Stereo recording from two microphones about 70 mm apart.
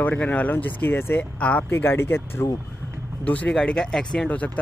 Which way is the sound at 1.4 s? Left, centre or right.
Centre.